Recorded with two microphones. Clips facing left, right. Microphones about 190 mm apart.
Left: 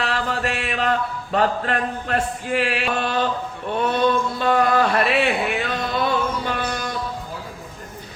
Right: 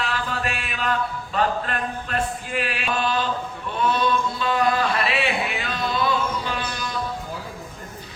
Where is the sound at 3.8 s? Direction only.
55° left (ahead or behind).